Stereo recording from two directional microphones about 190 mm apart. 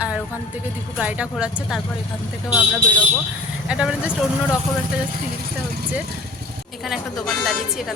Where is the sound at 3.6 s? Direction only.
5° right (ahead or behind).